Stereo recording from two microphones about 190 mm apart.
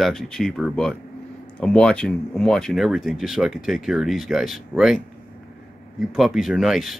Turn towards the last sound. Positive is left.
turn(degrees=0)  # may be behind; listen again after turning